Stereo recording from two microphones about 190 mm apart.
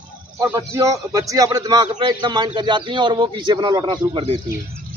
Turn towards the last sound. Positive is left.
turn(degrees=-25)  # may be behind; listen again after turning